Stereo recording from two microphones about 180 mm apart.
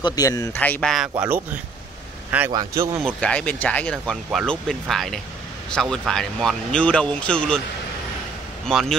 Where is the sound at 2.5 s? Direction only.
20° right (ahead or behind).